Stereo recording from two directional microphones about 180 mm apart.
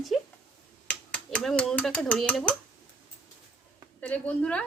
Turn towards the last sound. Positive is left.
turn(degrees=5)  # may be behind; listen again after turning